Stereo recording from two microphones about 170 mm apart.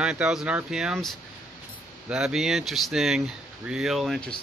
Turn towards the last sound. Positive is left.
turn(degrees=0)  # may be behind; listen again after turning